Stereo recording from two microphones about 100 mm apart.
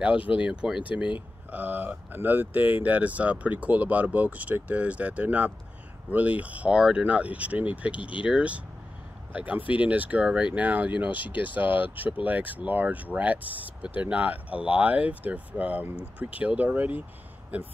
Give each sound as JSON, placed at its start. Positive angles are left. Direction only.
{"t": 0.4, "sound": "speech", "side_deg": -10}